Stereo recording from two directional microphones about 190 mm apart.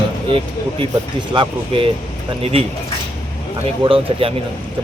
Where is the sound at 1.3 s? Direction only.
25° right (ahead or behind).